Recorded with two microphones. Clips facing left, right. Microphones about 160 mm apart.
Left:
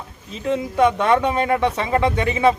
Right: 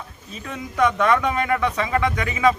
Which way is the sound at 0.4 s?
25° left (ahead or behind).